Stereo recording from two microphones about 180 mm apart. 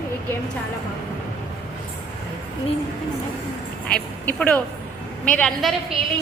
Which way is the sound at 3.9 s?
5° left (ahead or behind).